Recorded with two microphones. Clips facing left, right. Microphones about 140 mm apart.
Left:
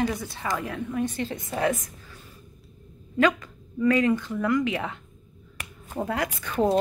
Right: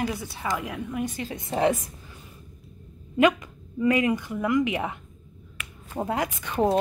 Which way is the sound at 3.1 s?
20° right (ahead or behind).